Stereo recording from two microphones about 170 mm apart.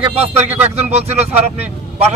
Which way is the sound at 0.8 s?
40° right (ahead or behind).